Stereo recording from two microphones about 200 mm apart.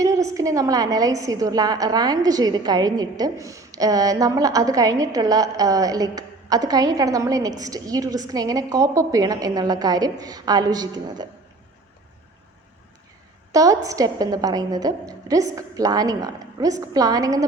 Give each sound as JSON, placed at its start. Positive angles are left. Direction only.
{"t": 0.0, "sound": "a woman's voice", "side_deg": -15}
{"t": 13.5, "sound": "a woman's voice", "side_deg": -15}